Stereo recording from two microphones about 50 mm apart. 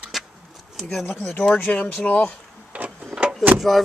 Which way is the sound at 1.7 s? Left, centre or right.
Left.